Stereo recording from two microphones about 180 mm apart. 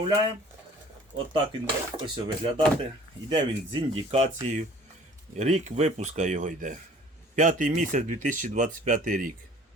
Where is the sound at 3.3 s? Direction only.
25° right (ahead or behind); by 9.3 s 50° right (ahead or behind).